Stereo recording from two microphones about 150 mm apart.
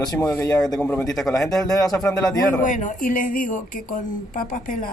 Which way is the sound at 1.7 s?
25° left (ahead or behind).